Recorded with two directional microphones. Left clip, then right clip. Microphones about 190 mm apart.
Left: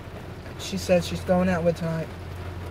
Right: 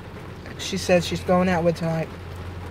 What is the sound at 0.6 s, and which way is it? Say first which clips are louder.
Speech: right 2 dB; 30° right (ahead or behind).